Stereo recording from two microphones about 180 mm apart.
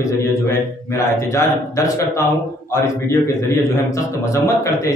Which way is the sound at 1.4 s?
15° left (ahead or behind).